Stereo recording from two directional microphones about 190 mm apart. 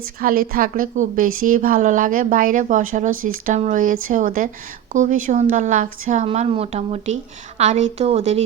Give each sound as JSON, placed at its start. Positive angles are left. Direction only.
{"t": 0.0, "sound": "a woman's voice", "side_deg": -50}